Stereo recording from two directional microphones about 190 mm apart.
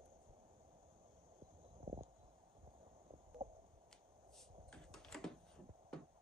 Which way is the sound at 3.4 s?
30° right (ahead or behind).